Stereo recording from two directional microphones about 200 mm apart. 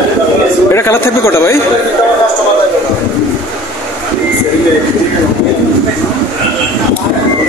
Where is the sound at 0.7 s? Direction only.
10° left (ahead or behind).